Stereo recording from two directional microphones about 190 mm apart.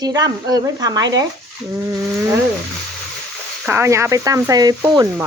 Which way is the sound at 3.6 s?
15° right (ahead or behind).